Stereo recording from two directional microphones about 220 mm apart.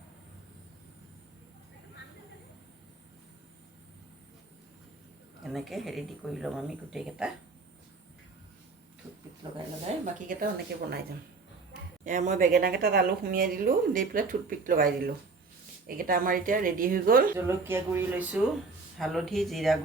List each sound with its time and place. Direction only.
5.4 s speech: centre (ahead or behind)
9.0 s a sound: 15° right (ahead or behind)
10.2 s speech: 40° right (ahead or behind)
12.0 s speech: 35° right (ahead or behind)
15.9 s speech: 40° right (ahead or behind)
17.3 s speech: 10° right (ahead or behind)